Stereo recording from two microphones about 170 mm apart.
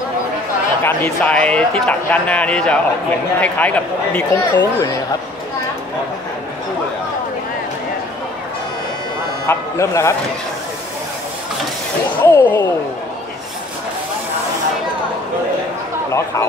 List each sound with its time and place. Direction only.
0.8 s speech: 10° left (ahead or behind)
9.5 s speech: 15° left (ahead or behind)
12.3 s speech: 15° left (ahead or behind)
16.1 s speech: 15° left (ahead or behind)